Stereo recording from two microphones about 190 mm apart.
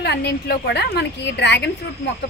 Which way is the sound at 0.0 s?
60° left (ahead or behind).